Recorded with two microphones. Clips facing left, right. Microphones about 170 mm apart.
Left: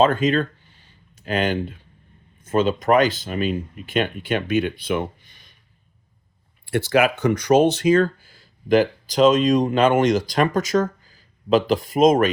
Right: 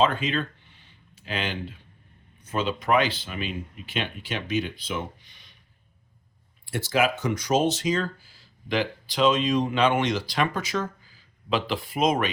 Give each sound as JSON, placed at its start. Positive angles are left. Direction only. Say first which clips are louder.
{"t": 0.0, "sound": "a sound", "louder": "left 6 dB", "side_deg": 45}
{"t": 2.4, "sound": "speech", "louder": "left 8 dB", "side_deg": 50}
{"t": 6.7, "sound": "speech", "louder": "left 6 dB", "side_deg": 65}